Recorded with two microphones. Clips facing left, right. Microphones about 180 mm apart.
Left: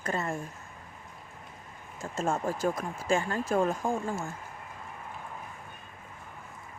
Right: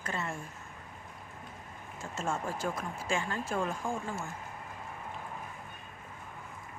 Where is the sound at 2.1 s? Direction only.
35° left (ahead or behind).